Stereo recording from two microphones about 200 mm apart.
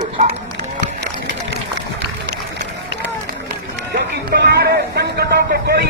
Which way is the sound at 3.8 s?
55° right (ahead or behind).